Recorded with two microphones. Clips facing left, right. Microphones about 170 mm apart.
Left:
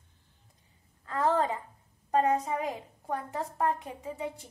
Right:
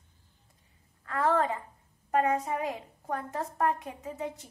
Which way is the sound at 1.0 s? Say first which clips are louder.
Even; 20° left (ahead or behind).